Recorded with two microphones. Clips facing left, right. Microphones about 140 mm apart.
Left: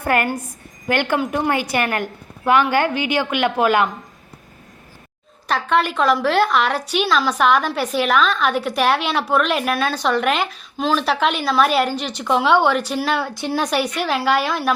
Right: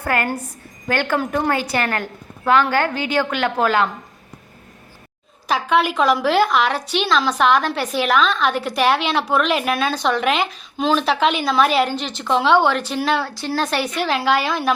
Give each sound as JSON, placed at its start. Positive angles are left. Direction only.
{"t": 0.0, "sound": "a woman's voice", "side_deg": 20}
{"t": 5.5, "sound": "a woman's voice", "side_deg": 0}
{"t": 13.3, "sound": "a woman's voice", "side_deg": 20}